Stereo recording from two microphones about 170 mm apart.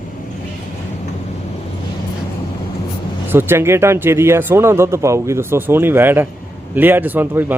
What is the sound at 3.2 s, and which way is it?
Speech, 15° right (ahead or behind).